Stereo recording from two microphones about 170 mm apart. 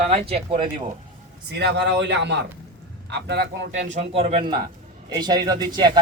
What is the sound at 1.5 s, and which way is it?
Speech, 80° right.